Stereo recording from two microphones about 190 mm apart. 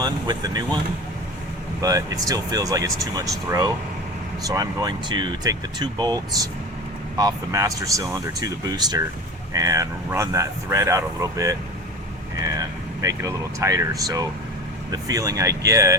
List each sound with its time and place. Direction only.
0.0 s speech: 20° right (ahead or behind)
1.8 s speech: 20° right (ahead or behind)